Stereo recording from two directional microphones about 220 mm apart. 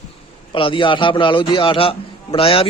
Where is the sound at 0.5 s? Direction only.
25° left (ahead or behind).